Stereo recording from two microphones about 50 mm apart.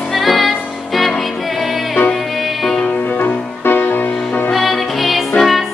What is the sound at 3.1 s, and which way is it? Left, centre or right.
Music, left.